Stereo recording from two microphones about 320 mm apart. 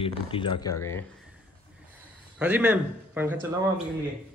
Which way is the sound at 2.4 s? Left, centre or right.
Centre.